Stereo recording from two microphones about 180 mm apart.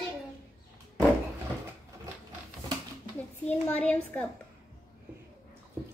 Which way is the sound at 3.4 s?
10° left (ahead or behind).